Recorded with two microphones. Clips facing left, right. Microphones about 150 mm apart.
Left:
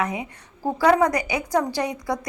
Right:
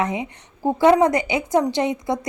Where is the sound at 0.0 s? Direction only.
25° right (ahead or behind).